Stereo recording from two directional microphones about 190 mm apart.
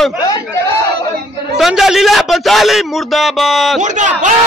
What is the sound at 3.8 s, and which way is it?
Speech, 40° right (ahead or behind).